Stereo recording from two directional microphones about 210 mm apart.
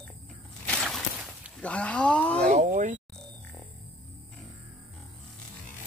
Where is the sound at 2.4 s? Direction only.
35° right (ahead or behind).